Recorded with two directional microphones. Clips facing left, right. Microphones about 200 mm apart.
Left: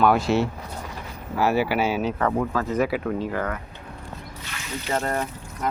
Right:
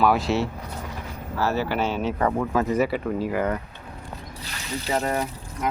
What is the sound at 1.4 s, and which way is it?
Speech, 15° left (ahead or behind).